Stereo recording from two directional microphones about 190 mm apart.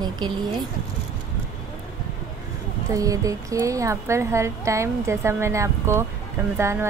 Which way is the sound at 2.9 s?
15° right (ahead or behind).